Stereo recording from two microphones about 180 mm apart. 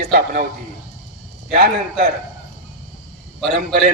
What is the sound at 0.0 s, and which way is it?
Speech, 50° right (ahead or behind).